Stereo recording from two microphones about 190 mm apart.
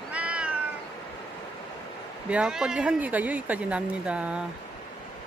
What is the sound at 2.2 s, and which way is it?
Speech, 5° right (ahead or behind).